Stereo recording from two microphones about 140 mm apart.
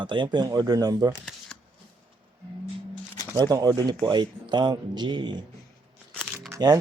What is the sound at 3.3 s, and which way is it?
Speech, 30° right (ahead or behind).